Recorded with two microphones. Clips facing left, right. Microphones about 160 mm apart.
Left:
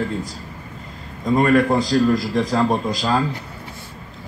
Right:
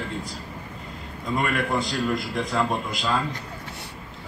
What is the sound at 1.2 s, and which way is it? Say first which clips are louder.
Speech: left 10 dB; 40° left (ahead or behind).